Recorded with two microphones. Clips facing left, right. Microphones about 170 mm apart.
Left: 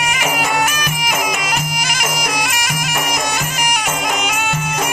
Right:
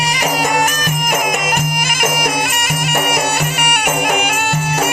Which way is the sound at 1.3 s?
50° right (ahead or behind).